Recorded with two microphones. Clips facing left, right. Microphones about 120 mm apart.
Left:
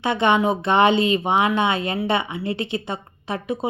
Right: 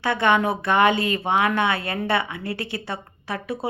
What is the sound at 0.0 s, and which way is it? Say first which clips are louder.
A woman's voice: left 1 dB; 20° left (ahead or behind).